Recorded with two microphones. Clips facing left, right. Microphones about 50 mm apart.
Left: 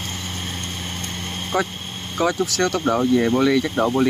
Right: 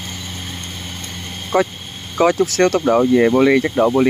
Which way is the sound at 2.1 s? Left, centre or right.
Right.